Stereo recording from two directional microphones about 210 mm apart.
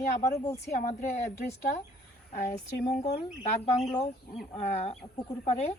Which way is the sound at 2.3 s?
35° left (ahead or behind).